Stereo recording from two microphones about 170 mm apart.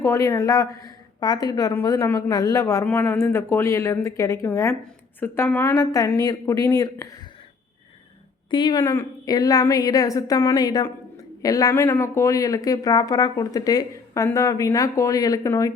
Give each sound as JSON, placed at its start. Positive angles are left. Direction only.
{"t": 0.0, "sound": "speech", "side_deg": 15}
{"t": 8.4, "sound": "speech", "side_deg": 25}